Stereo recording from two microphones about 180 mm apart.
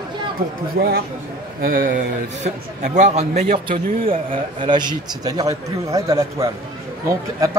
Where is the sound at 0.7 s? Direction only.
55° right (ahead or behind).